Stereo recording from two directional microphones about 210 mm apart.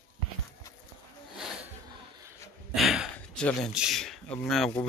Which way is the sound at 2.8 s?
Centre (ahead or behind).